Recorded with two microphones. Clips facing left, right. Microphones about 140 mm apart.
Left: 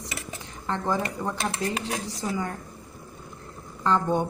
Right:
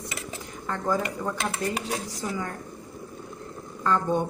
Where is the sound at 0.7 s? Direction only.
20° left (ahead or behind).